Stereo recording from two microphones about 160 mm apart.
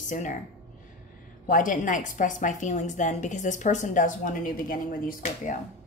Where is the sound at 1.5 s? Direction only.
55° left (ahead or behind).